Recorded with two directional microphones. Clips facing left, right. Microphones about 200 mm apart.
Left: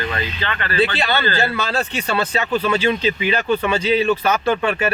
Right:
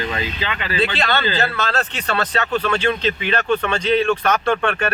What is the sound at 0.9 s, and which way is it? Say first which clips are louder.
Speech: even; 10° left (ahead or behind).